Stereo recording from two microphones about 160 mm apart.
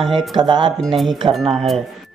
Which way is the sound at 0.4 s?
30° right (ahead or behind).